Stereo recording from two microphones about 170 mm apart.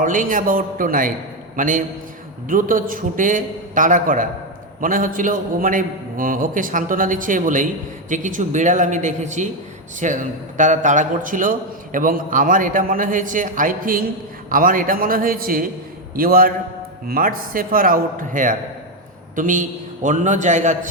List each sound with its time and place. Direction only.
0.0 s a man's voice: 50° right (ahead or behind)